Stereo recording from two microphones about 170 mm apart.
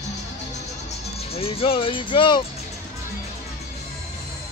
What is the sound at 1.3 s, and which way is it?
Speech, 35° left (ahead or behind).